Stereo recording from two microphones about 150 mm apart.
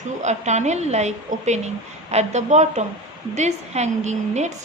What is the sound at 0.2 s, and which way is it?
A woman's voice, 50° right (ahead or behind).